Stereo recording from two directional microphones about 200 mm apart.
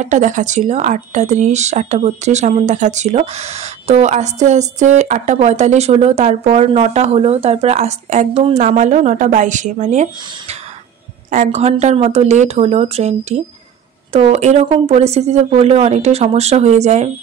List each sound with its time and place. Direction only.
0.0 s speech: 40° right (ahead or behind)
11.2 s speech: 35° right (ahead or behind)